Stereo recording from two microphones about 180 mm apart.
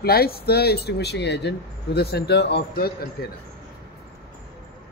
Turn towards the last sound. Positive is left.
turn(degrees=60)  # may be behind; listen again after turning